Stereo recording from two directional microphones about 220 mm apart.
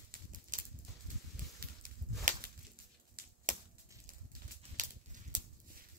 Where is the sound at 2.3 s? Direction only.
35° right (ahead or behind).